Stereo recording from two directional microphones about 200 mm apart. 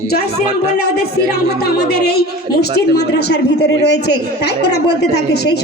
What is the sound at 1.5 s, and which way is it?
Music, 55° left (ahead or behind).